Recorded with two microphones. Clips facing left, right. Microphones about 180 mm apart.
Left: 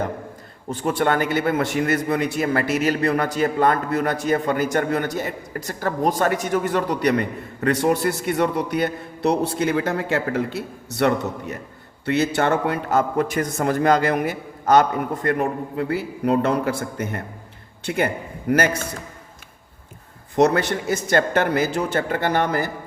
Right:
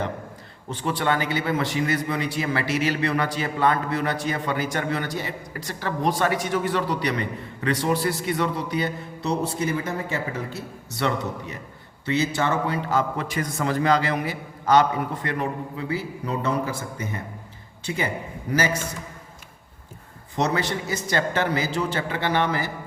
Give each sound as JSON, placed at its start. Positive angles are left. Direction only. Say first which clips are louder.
{"t": 0.8, "sound": "a man's voice", "louder": "left 4 dB", "side_deg": 45}
{"t": 20.3, "sound": "a man's voice", "louder": "left 6 dB", "side_deg": 50}